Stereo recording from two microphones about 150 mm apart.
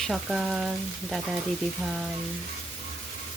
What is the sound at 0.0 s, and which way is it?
Frying, centre (ahead or behind).